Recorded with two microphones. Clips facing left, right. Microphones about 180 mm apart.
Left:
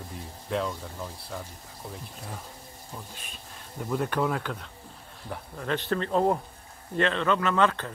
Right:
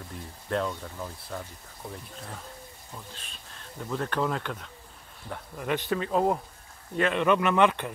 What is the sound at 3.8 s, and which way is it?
Speech, 10° left (ahead or behind).